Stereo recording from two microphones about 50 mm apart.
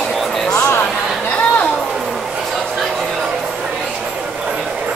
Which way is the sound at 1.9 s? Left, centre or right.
Centre.